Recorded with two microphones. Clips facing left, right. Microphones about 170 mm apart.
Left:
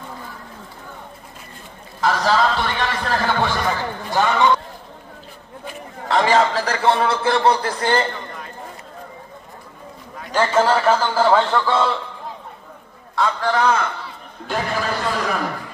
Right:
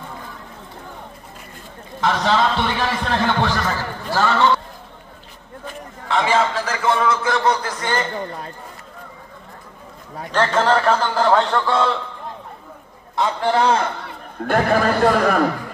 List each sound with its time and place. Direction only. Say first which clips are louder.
2.0 s a man's voice: even; centre (ahead or behind)
6.0 s a man's voice: left 2 dB; 40° left (ahead or behind)
10.3 s a man's voice: even; 10° left (ahead or behind)
13.1 s a man's voice: right 1 dB; 20° right (ahead or behind)
14.0 s a man's voice: right 6 dB; 55° right (ahead or behind)